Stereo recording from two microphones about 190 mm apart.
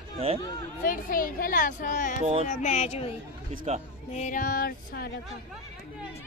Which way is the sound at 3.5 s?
35° right (ahead or behind).